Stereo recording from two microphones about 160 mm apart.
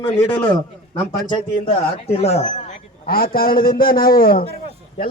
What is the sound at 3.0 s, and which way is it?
A man's voice, 65° left (ahead or behind).